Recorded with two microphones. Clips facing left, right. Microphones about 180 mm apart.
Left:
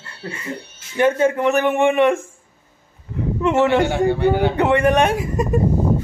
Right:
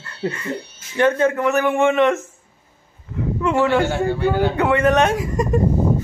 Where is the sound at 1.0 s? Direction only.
10° left (ahead or behind).